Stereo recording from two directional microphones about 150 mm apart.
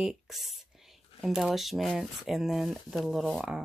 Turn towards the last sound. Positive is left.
turn(degrees=-5)  # may be behind; listen again after turning